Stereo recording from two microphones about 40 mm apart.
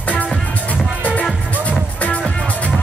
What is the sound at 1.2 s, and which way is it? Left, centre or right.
Music, left.